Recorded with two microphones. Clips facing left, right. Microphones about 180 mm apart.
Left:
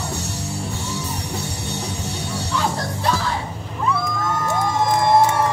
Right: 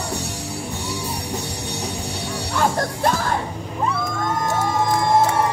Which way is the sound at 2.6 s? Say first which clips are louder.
Right 5 dB; 50° right (ahead or behind).